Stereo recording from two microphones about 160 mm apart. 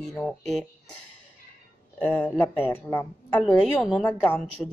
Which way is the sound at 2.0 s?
10° left (ahead or behind).